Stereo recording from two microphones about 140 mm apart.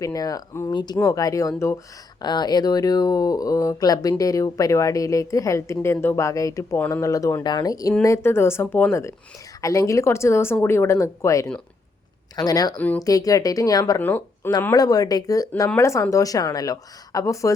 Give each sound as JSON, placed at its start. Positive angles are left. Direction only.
{"t": 0.0, "sound": "a woman's voice", "side_deg": 25}
{"t": 12.7, "sound": "speech", "side_deg": 10}
{"t": 13.0, "sound": "a woman's voice", "side_deg": 25}
{"t": 14.0, "sound": "speech", "side_deg": 15}
{"t": 14.6, "sound": "a woman's voice", "side_deg": 25}